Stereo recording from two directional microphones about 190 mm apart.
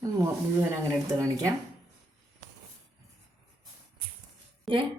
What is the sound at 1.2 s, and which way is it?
Speech, 15° right (ahead or behind).